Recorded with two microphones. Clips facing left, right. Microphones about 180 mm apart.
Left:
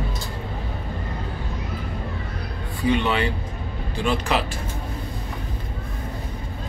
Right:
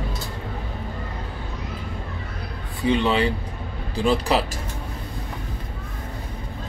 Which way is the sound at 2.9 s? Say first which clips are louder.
Right 2 dB; 30° right (ahead or behind).